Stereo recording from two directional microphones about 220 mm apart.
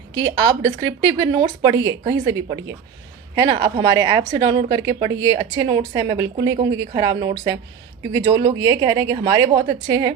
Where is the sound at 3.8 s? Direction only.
15° right (ahead or behind).